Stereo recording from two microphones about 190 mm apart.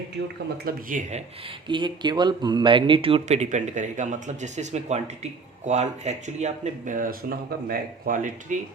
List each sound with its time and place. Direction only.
0.2 s speech: 70° right (ahead or behind)
0.6 s speech: 45° right (ahead or behind)
1.6 s speech: 25° right (ahead or behind); by 8.5 s 45° right (ahead or behind)